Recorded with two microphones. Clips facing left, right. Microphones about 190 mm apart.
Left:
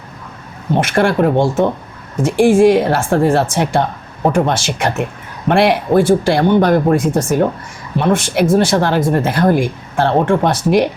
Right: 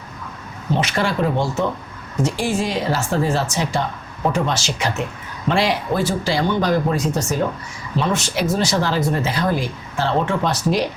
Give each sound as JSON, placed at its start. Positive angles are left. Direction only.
{"t": 0.7, "sound": "speech", "side_deg": 55}